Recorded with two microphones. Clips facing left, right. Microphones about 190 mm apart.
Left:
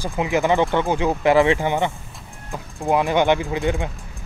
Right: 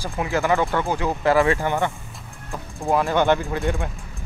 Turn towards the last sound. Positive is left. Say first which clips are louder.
# left 2 dB
turn(degrees=15)  # may be behind; listen again after turning